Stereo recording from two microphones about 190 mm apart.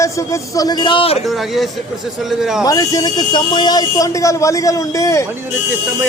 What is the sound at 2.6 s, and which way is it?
Speech, 20° left (ahead or behind).